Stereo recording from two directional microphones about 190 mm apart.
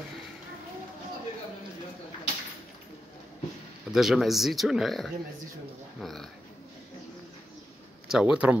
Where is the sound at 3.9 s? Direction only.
Centre (ahead or behind).